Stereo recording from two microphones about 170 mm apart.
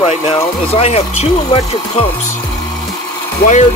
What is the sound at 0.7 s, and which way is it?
Speech, 35° left (ahead or behind).